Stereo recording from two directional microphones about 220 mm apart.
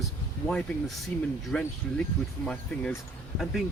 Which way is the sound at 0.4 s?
Centre (ahead or behind).